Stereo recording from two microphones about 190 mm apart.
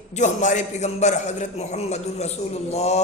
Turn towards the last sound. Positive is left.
turn(degrees=35)  # may be behind; listen again after turning